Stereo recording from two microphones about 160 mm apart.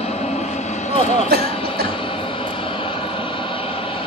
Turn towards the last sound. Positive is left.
turn(degrees=35)  # may be behind; listen again after turning